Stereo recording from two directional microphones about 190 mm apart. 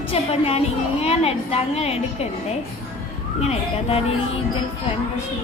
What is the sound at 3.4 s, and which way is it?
Speech, 30° left (ahead or behind).